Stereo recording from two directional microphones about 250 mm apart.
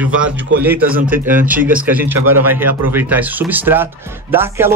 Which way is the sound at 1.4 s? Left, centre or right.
Centre.